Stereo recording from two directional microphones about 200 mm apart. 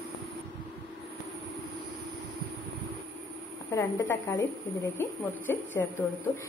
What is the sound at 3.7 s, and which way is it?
A woman's voice, 15° left (ahead or behind).